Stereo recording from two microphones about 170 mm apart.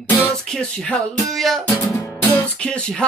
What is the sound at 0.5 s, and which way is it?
Speech, 5° left (ahead or behind).